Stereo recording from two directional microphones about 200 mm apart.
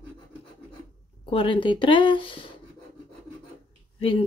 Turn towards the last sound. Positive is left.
turn(degrees=25)  # may be behind; listen again after turning